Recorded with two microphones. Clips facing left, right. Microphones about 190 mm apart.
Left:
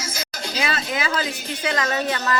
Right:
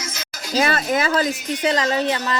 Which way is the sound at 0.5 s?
45° right (ahead or behind).